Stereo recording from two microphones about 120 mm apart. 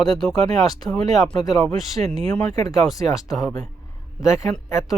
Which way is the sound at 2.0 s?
60° right (ahead or behind).